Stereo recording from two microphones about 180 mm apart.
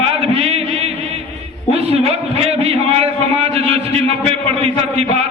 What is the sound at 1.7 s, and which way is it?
A man's voice, 35° right (ahead or behind).